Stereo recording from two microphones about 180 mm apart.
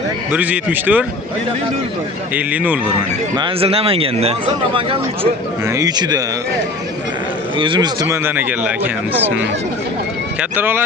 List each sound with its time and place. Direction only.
0.3 s speech: 10° right (ahead or behind)
2.3 s speech: 10° right (ahead or behind)
3.3 s speech: 30° right (ahead or behind)
5.6 s speech: 20° right (ahead or behind)
7.6 s speech: 30° right (ahead or behind)
8.1 s speech: 10° right (ahead or behind)
10.6 s speech: 10° right (ahead or behind)